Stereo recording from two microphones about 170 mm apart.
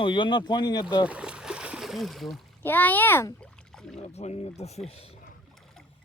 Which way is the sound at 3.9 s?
40° left (ahead or behind).